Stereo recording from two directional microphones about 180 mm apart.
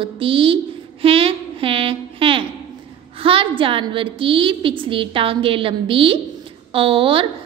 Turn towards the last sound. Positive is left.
turn(degrees=-30)  # may be behind; listen again after turning